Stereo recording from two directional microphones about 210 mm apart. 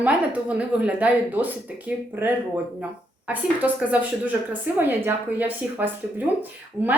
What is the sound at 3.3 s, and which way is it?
A woman's voice, 5° right (ahead or behind).